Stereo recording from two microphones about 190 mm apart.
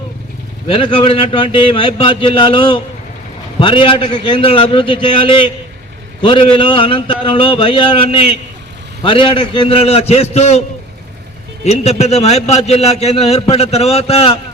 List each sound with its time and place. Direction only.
0.7 s a man's voice: 30° left (ahead or behind)
11.6 s a man's voice: 35° left (ahead or behind)